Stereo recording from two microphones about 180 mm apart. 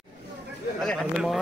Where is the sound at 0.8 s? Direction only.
Centre (ahead or behind).